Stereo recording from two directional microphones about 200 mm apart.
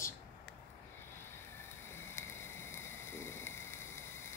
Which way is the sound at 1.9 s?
10° left (ahead or behind).